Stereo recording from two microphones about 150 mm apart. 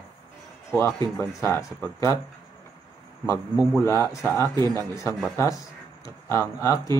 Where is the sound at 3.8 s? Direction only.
20° left (ahead or behind).